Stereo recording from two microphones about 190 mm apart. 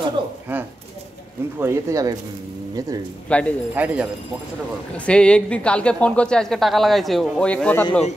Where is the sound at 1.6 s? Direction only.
15° right (ahead or behind).